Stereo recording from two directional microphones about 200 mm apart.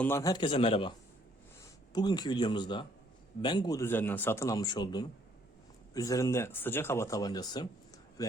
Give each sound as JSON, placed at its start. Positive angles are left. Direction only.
{"t": 0.0, "sound": "a man's voice", "side_deg": 15}